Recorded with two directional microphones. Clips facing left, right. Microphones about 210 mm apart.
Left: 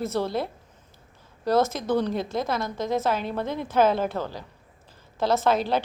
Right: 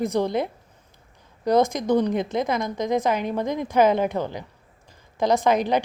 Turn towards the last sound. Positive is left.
turn(degrees=-15)  # may be behind; listen again after turning